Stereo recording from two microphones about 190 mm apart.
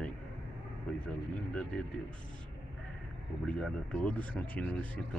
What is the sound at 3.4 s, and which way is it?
Speech, 5° left (ahead or behind).